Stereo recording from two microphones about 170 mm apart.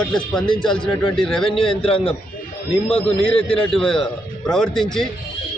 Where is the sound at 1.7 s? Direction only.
35° left (ahead or behind).